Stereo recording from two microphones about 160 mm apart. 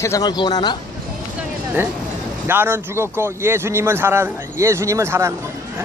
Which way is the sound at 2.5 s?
15° right (ahead or behind).